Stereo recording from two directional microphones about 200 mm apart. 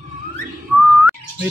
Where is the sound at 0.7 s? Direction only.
5° right (ahead or behind).